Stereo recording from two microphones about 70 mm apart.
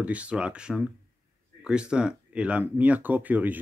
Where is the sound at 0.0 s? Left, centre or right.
Centre.